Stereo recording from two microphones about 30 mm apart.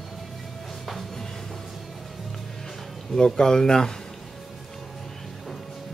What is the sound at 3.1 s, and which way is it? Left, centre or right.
Speech, left.